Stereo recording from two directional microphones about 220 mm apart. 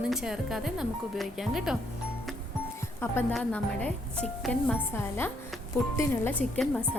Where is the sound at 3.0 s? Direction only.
10° left (ahead or behind).